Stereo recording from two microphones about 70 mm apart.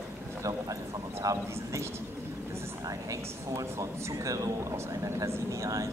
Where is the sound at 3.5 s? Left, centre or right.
Right.